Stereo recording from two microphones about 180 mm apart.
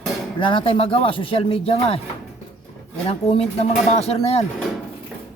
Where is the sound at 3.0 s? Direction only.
35° left (ahead or behind).